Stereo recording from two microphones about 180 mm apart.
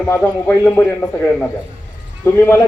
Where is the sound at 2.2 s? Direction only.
15° left (ahead or behind).